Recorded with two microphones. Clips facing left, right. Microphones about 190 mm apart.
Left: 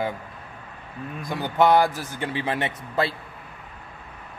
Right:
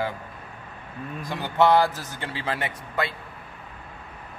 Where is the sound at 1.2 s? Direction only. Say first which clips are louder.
Left 1 dB; 15° left (ahead or behind).